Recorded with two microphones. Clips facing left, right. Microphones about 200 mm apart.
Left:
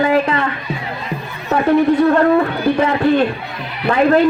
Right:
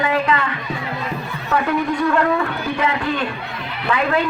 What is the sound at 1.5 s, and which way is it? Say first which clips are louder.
A man's voice: left 7 dB; 40° left (ahead or behind).